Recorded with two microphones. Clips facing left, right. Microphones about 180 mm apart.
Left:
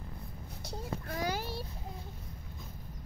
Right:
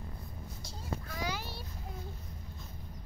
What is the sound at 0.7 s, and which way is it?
Child singing, 55° left (ahead or behind).